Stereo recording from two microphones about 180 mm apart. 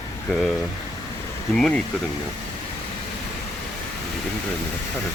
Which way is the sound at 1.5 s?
5° left (ahead or behind).